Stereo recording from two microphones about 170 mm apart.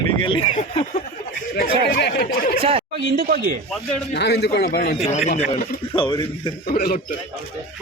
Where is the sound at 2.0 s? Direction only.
65° left (ahead or behind).